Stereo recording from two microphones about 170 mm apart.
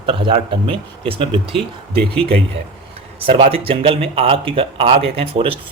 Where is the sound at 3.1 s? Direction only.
35° right (ahead or behind).